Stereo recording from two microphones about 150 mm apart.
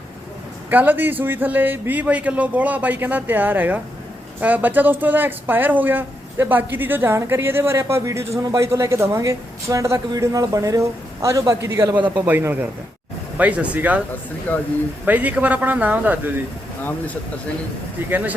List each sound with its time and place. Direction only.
0.7 s speech: 10° right (ahead or behind)
14.5 s speech: 10° left (ahead or behind)
15.0 s speech: 10° right (ahead or behind)
18.1 s speech: 10° right (ahead or behind)